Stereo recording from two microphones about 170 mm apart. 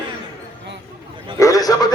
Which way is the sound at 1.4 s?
20° left (ahead or behind).